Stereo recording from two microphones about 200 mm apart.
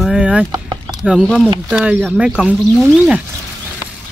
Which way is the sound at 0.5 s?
20° right (ahead or behind).